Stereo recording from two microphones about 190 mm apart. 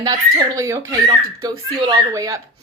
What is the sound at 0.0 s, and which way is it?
A woman's voice, 20° right (ahead or behind).